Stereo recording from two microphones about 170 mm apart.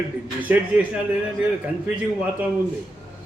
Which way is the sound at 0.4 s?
10° right (ahead or behind).